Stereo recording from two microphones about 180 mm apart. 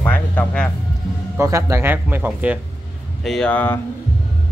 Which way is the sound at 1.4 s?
15° right (ahead or behind).